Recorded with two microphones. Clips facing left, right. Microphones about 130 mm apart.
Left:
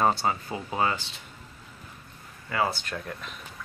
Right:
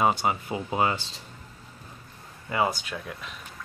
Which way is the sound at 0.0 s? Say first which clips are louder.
Right 1 dB; 15° right (ahead or behind).